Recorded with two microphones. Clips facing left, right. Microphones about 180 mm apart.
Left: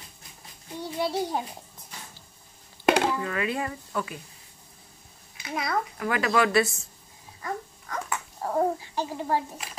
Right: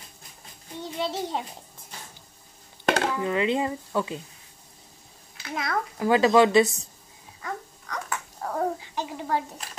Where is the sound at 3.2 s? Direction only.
20° right (ahead or behind).